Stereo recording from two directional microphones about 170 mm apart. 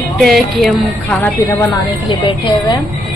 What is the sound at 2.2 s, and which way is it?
Speech, 30° left (ahead or behind).